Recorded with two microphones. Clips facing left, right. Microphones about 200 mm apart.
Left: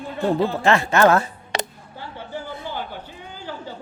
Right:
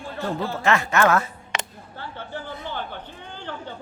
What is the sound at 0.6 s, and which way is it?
Speech, 30° left (ahead or behind).